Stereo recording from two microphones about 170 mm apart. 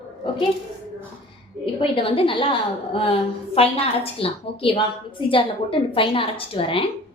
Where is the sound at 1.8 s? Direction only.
30° left (ahead or behind).